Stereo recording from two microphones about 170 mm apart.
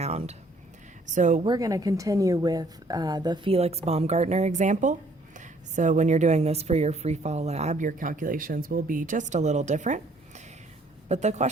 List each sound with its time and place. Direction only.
0.0 s a woman's voice: 40° right (ahead or behind)
1.5 s a woman's voice: 20° right (ahead or behind); by 11.4 s 40° right (ahead or behind)